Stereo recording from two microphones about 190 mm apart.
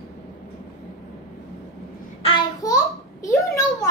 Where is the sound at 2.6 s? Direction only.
15° left (ahead or behind).